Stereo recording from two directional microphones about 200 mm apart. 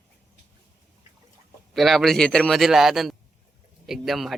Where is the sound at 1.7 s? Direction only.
Centre (ahead or behind).